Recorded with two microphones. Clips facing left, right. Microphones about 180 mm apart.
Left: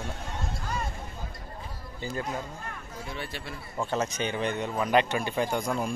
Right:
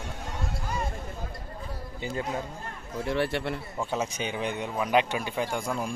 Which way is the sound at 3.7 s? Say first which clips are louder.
Left 5 dB; 10° right (ahead or behind).